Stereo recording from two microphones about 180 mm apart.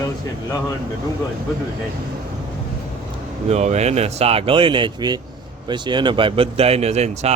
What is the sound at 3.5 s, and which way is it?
Speech, 40° right (ahead or behind).